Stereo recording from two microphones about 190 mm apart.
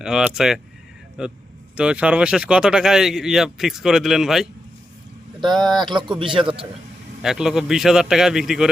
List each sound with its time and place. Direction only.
0.0 s speech: 5° right (ahead or behind)
5.5 s speech: centre (ahead or behind)
5.9 s speech: 25° right (ahead or behind)
7.2 s speech: centre (ahead or behind)